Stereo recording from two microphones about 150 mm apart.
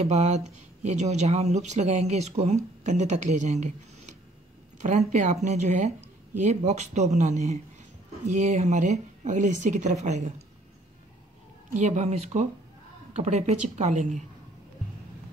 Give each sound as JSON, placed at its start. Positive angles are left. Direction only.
{"t": 0.0, "sound": "speech", "side_deg": -45}
{"t": 11.7, "sound": "speech", "side_deg": -50}